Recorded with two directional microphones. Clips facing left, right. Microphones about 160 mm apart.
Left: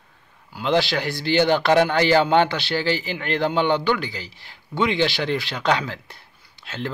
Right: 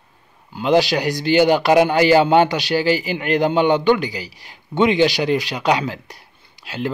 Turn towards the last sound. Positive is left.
turn(degrees=-15)  # may be behind; listen again after turning